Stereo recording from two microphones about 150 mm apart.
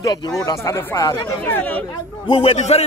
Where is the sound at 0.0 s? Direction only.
25° left (ahead or behind); by 1.9 s 10° left (ahead or behind).